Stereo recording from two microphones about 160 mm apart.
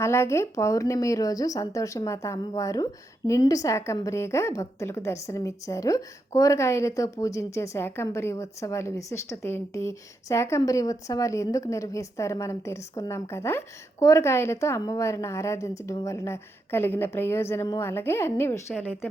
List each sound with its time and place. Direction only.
0.0 s a woman's voice: 15° left (ahead or behind)